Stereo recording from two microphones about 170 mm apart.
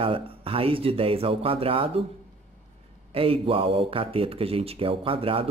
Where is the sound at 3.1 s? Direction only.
35° right (ahead or behind).